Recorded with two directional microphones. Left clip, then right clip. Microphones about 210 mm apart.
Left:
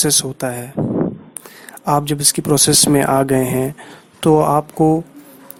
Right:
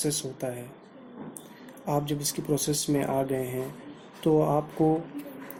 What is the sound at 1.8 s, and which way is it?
Speech, 50° left (ahead or behind).